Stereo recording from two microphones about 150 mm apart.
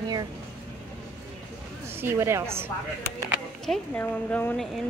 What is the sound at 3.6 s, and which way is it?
Speech, centre (ahead or behind).